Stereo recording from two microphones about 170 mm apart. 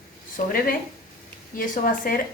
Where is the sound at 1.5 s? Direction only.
50° left (ahead or behind).